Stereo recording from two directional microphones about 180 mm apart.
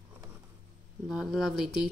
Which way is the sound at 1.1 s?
Centre (ahead or behind).